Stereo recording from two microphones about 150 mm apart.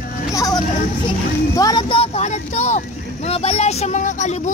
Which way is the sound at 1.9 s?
45° left (ahead or behind).